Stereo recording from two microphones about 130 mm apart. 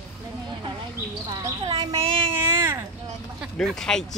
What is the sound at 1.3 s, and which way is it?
Speech, 30° right (ahead or behind).